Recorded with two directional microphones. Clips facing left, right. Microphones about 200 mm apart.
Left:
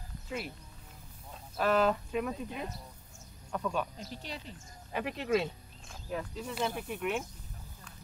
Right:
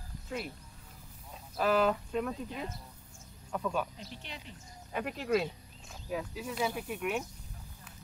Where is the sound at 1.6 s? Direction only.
Centre (ahead or behind).